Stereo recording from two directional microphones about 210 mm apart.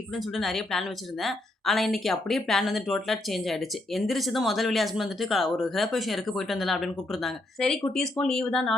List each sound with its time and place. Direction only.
0.1 s a woman's voice: centre (ahead or behind)